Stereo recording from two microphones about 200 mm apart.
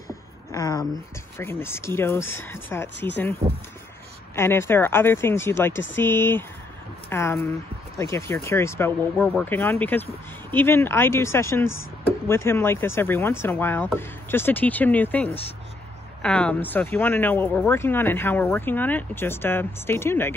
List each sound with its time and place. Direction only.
0.5 s a woman's voice: 20° left (ahead or behind)
4.4 s a woman's voice: 10° left (ahead or behind)